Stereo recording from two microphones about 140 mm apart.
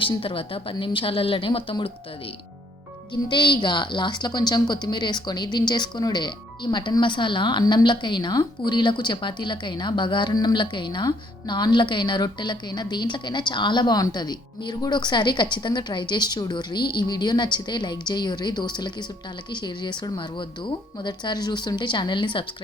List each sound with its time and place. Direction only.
0.0 s a woman's voice: 40° left (ahead or behind)
3.1 s a woman's voice: 35° left (ahead or behind)